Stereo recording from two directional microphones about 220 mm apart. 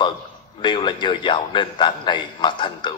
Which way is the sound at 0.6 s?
20° left (ahead or behind).